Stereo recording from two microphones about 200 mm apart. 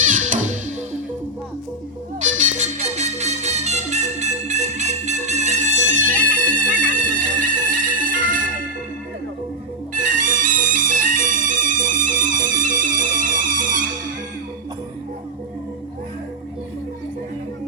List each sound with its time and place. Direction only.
0.1 s music: 40° right (ahead or behind)
2.6 s music: 35° right (ahead or behind)
9.9 s music: 40° right (ahead or behind)